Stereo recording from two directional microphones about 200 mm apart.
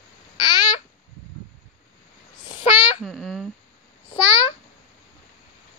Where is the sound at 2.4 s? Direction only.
20° left (ahead or behind).